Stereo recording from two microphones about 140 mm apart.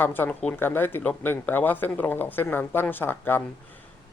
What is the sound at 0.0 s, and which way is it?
Speech, 15° left (ahead or behind).